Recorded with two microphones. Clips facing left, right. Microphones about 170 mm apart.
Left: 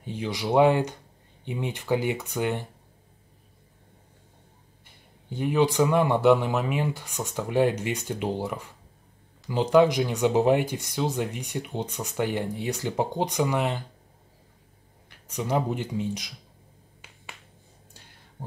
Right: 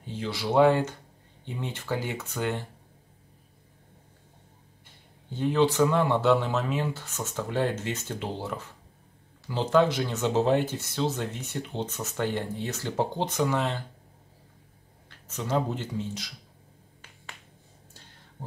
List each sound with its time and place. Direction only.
0.0 s speech: 15° left (ahead or behind)
4.8 s speech: 10° left (ahead or behind)
15.0 s speech: 15° left (ahead or behind)